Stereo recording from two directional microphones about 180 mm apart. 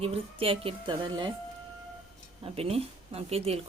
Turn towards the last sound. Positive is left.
turn(degrees=-35)  # may be behind; listen again after turning